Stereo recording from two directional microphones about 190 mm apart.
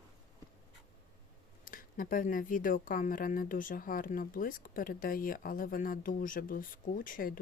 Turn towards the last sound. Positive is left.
turn(degrees=50)  # may be behind; listen again after turning